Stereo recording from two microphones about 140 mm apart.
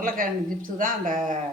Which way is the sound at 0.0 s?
80° right.